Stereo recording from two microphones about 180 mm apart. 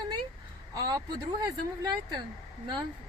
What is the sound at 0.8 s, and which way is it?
Speech, 20° right (ahead or behind).